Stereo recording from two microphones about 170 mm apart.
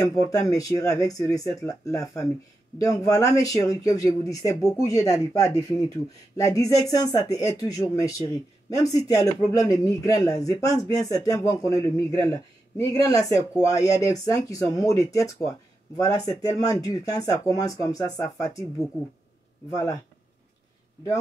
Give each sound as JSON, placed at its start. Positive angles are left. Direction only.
{"t": 0.0, "sound": "speech", "side_deg": 20}
{"t": 9.1, "sound": "speech", "side_deg": 20}
{"t": 19.7, "sound": "speech", "side_deg": 20}